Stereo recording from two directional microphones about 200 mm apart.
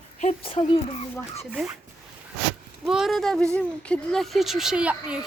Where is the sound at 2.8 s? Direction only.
Centre (ahead or behind).